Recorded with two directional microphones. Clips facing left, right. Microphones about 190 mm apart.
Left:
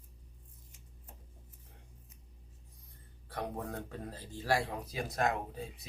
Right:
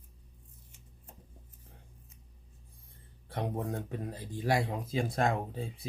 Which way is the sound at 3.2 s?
25° right (ahead or behind).